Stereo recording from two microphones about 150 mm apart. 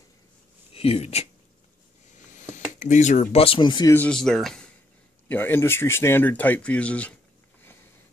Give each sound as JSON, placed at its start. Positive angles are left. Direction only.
{"t": 0.7, "sound": "speech", "side_deg": 40}
{"t": 2.3, "sound": "a sound", "side_deg": 55}
{"t": 3.4, "sound": "speech", "side_deg": 35}
{"t": 3.9, "sound": "speech", "side_deg": 10}
{"t": 5.3, "sound": "speech", "side_deg": 15}